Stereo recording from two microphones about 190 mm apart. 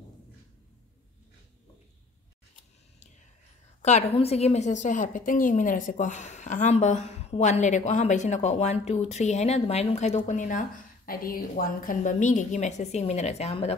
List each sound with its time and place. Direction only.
3.8 s a woman's voice: 35° left (ahead or behind)